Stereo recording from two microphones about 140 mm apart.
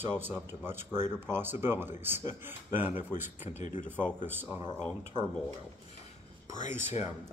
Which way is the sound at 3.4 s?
55° left (ahead or behind).